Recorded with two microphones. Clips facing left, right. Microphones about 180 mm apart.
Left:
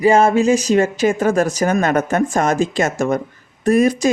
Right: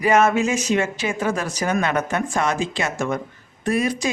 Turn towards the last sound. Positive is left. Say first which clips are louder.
# left 7 dB
turn(degrees=45)  # may be behind; listen again after turning